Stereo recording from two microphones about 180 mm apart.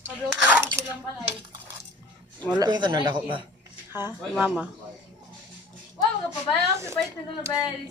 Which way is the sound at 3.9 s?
10° right (ahead or behind).